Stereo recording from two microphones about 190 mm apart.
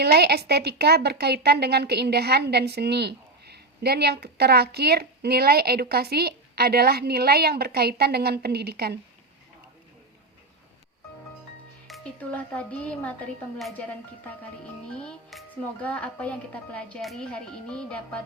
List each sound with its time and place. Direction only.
0.0 s speech: 60° right (ahead or behind)
11.9 s speech: 5° left (ahead or behind)
14.9 s speech: centre (ahead or behind)